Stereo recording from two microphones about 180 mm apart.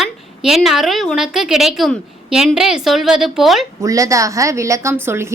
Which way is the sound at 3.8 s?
20° right (ahead or behind).